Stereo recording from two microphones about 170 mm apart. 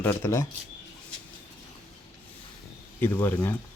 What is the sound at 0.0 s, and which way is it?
Speech, 15° left (ahead or behind).